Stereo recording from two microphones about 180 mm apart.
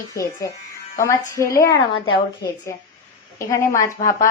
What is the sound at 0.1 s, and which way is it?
A woman's voice, 15° left (ahead or behind).